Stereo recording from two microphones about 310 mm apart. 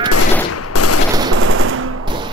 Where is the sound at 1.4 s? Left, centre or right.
Right.